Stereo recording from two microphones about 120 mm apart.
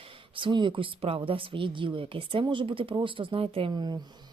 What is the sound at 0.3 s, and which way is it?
Speech, 45° right (ahead or behind).